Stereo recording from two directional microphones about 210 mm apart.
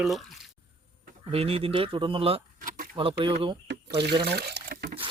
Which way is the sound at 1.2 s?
25° right (ahead or behind).